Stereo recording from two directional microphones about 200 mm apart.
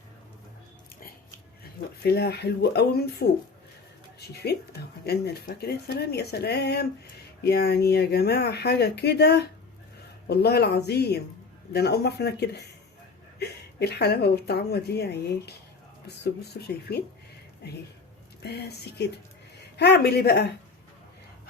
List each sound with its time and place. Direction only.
2.0 s a woman's voice: 55° left (ahead or behind)
18.4 s speech: 55° left (ahead or behind)